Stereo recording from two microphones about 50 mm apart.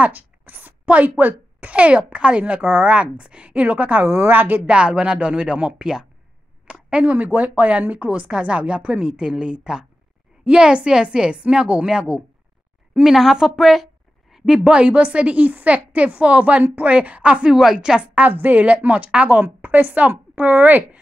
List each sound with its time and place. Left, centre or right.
0.0 s a child's voice: right
4.6 s a child's voice: right
13.0 s a woman's voice: centre
14.4 s a child's voice: centre
18.3 s a woman's voice: right